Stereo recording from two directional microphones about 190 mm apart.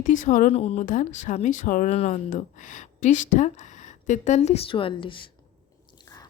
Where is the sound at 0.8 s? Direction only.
40° left (ahead or behind).